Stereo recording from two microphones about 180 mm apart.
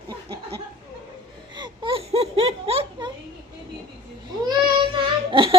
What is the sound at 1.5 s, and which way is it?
Laughter, 25° right (ahead or behind).